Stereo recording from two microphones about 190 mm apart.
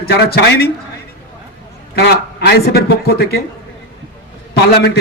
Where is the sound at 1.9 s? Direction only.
60° left (ahead or behind).